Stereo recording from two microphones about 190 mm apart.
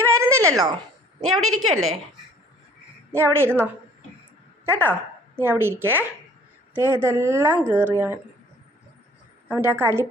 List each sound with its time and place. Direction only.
0.1 s a sound: 15° right (ahead or behind)
1.2 s a woman's voice: 90° right
3.1 s speech: 15° right (ahead or behind)
9.5 s speech: 10° right (ahead or behind)